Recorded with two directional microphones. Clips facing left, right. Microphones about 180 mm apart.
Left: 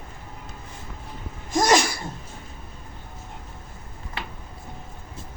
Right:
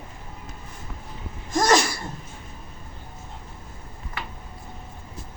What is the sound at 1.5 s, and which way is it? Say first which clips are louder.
Sneeze: even; 15° left (ahead or behind).